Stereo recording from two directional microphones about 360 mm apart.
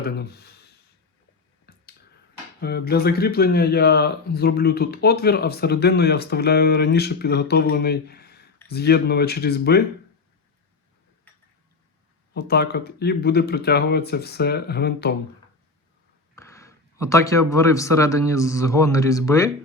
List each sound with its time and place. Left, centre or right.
0.0 s speech: left
1.7 s finger snapping: left
2.6 s speech: left
12.3 s speech: left
16.3 s speech: centre